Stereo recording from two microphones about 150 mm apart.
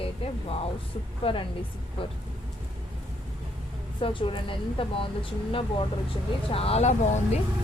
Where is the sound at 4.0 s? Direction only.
35° left (ahead or behind).